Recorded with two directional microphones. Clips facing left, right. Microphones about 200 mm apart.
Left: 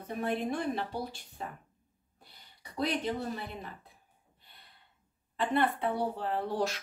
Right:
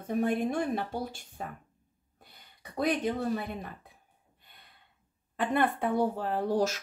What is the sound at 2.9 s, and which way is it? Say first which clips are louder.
Speech: right 4 dB; 50° right (ahead or behind).